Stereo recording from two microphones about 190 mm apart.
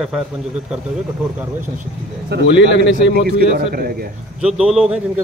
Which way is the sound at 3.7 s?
50° right (ahead or behind).